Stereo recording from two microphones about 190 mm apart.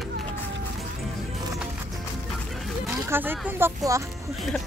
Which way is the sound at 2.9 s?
10° right (ahead or behind).